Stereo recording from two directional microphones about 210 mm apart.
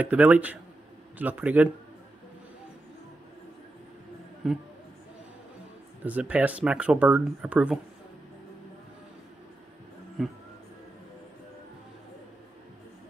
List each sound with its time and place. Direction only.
0.0 s speech: 10° right (ahead or behind)
4.4 s speech: 5° right (ahead or behind)
6.0 s speech: 5° right (ahead or behind)
10.2 s speech: centre (ahead or behind)